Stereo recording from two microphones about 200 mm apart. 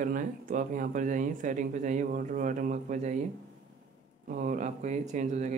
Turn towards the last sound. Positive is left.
turn(degrees=-35)  # may be behind; listen again after turning